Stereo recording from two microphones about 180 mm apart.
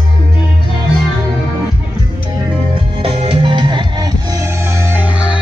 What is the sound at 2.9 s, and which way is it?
Music, 30° right (ahead or behind).